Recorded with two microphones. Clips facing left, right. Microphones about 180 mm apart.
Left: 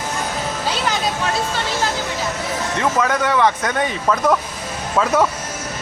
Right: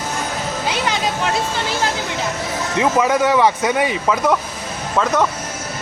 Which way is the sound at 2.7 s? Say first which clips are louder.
Right 4 dB; 10° right (ahead or behind).